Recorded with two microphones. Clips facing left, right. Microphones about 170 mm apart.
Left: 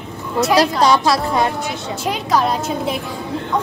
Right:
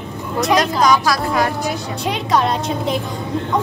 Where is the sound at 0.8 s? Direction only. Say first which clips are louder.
Left 1 dB; 25° left (ahead or behind).